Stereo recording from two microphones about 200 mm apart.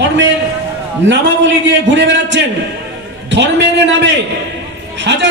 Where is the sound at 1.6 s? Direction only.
60° right (ahead or behind).